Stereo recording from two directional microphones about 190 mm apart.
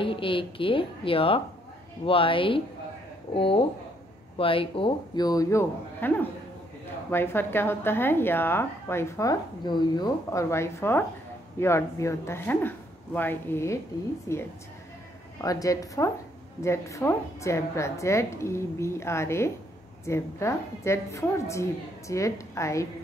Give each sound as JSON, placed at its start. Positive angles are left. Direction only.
{"t": 0.0, "sound": "a man's voice", "side_deg": 25}